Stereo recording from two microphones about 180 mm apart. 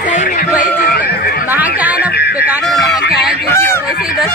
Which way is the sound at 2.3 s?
10° right (ahead or behind).